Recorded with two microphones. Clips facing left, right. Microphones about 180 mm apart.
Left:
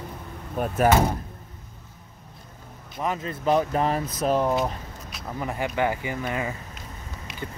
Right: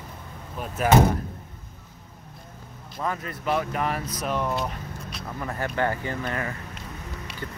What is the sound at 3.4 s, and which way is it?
Speech, 35° left (ahead or behind).